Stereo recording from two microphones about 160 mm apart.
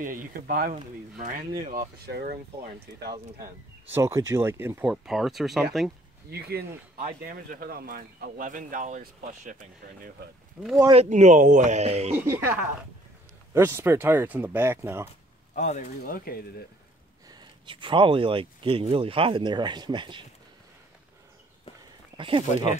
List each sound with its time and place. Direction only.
0.0 s speech: 60° right (ahead or behind); by 3.2 s 85° right
3.9 s speech: 15° right (ahead or behind); by 5.9 s centre (ahead or behind)
6.3 s speech: 75° right (ahead or behind)
7.2 s speech: 60° right (ahead or behind)
10.6 s speech: 5° right (ahead or behind)
11.1 s speech: 50° right (ahead or behind)
12.2 s speech: 15° right (ahead or behind)
15.5 s speech: 50° left (ahead or behind)
16.0 s speech: 65° left (ahead or behind)
17.3 s speech: 30° right (ahead or behind)
22.1 s speech: 35° right (ahead or behind)